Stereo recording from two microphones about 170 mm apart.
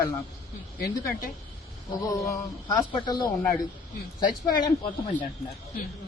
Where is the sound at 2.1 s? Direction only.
20° left (ahead or behind).